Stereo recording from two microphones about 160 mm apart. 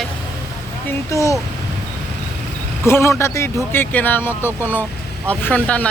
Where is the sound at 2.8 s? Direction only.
15° left (ahead or behind).